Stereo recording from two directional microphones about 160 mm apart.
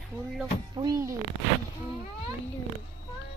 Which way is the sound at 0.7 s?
25° right (ahead or behind).